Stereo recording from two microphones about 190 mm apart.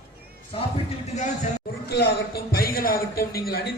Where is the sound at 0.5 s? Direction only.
30° left (ahead or behind).